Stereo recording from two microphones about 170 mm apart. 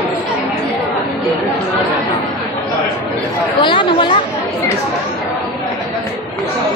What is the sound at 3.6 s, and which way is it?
Speech, 30° left (ahead or behind).